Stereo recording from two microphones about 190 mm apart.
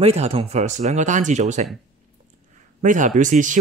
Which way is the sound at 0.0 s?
35° right (ahead or behind).